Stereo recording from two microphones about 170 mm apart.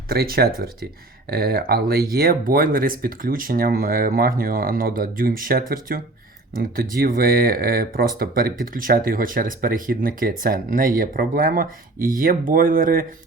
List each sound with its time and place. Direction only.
0.1 s speech: 65° right (ahead or behind)